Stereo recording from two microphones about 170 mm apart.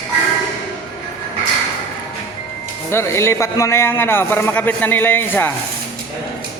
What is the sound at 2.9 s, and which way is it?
A man's voice, 15° left (ahead or behind).